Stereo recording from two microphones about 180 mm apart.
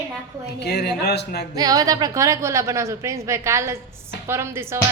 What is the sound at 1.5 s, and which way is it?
A woman's voice, 20° right (ahead or behind).